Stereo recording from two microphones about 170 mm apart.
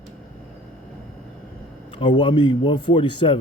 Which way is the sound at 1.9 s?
30° left (ahead or behind).